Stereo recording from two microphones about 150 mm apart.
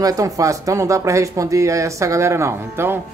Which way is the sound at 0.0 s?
20° right (ahead or behind).